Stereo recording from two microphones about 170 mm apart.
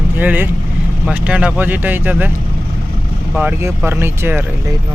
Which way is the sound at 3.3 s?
10° right (ahead or behind).